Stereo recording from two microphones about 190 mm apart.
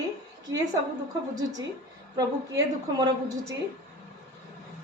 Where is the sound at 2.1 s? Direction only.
20° right (ahead or behind).